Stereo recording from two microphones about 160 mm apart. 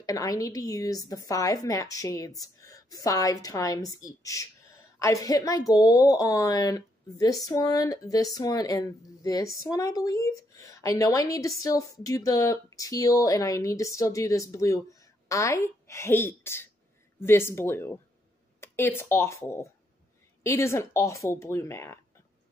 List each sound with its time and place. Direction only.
0.0 s a woman's voice: 20° left (ahead or behind)